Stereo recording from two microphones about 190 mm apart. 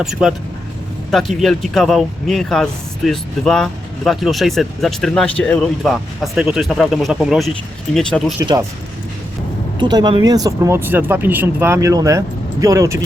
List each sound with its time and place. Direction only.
0.0 s speech: 5° right (ahead or behind)
8.4 s speech: 15° right (ahead or behind)
9.7 s speech: 20° right (ahead or behind)